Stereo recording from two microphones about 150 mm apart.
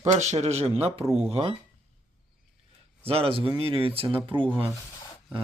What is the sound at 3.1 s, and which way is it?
Speech, 40° right (ahead or behind).